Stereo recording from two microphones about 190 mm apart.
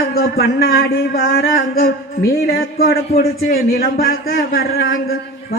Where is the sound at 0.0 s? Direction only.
55° left (ahead or behind).